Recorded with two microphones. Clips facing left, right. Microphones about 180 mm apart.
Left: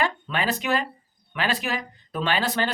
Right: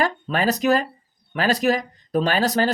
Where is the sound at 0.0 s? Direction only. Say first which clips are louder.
Right 4 dB; 40° right (ahead or behind).